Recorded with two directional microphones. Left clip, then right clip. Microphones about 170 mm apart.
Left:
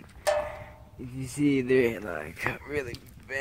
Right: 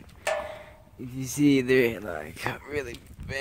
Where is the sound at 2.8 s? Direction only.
25° right (ahead or behind).